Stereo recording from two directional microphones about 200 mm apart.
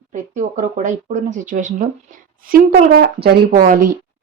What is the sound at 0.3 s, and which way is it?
A woman's voice, 40° right (ahead or behind).